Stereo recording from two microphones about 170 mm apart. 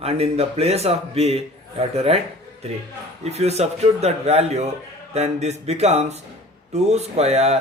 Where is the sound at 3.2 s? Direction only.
40° right (ahead or behind).